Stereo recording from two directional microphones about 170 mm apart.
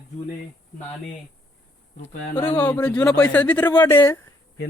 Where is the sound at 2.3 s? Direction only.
10° left (ahead or behind).